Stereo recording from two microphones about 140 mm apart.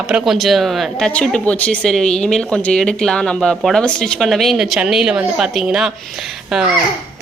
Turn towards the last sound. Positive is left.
turn(degrees=-5)  # may be behind; listen again after turning